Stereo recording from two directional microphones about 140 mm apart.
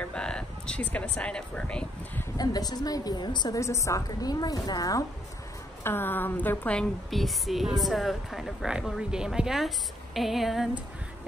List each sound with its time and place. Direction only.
0.0 s speech: 5° left (ahead or behind)
2.3 s a woman's voice: 30° left (ahead or behind)
5.9 s a woman's voice: 15° left (ahead or behind); by 10.8 s centre (ahead or behind)